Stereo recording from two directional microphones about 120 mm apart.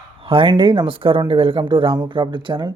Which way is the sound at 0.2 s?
45° right (ahead or behind).